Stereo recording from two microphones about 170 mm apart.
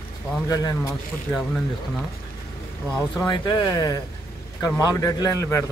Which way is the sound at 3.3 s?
20° left (ahead or behind).